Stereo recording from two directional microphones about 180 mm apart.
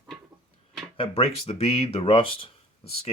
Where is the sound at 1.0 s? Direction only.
30° left (ahead or behind).